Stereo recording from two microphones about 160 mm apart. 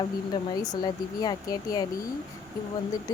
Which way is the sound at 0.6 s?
25° left (ahead or behind).